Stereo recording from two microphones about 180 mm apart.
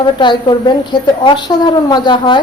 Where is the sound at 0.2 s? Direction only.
25° left (ahead or behind).